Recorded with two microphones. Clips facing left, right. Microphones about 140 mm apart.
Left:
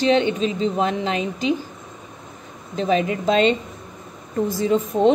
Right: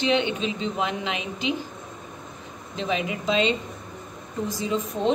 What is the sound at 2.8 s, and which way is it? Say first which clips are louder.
Speech: left 7 dB; 40° left (ahead or behind).